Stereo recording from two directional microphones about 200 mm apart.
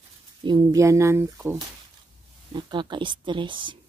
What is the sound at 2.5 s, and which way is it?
Speech, 20° right (ahead or behind).